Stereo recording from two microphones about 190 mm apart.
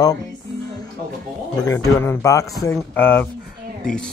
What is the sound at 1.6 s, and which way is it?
Speech, 15° left (ahead or behind).